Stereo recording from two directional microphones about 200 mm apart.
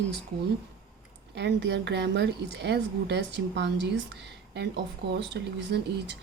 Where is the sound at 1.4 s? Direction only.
60° right (ahead or behind).